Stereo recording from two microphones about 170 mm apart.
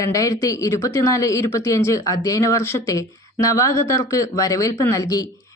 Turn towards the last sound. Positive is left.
turn(degrees=20)  # may be behind; listen again after turning